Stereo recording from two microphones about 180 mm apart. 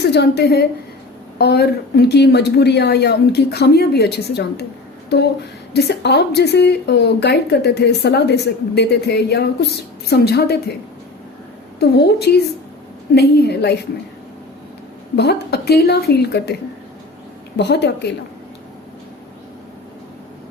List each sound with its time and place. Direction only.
0.0 s a woman's voice: 65° left (ahead or behind)
5.7 s speech: 70° left (ahead or behind)
11.8 s speech: 65° left (ahead or behind)
15.1 s speech: 65° left (ahead or behind)
17.6 s speech: 70° left (ahead or behind)